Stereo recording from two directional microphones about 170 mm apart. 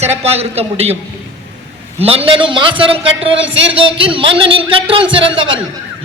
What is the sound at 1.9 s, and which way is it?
A man's voice, 35° right (ahead or behind).